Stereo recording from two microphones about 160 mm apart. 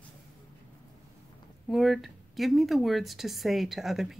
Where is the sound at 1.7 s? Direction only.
Centre (ahead or behind).